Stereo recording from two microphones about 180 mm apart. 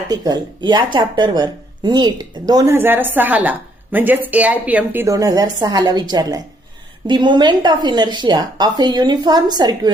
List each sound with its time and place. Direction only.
0.1 s speech: 20° right (ahead or behind)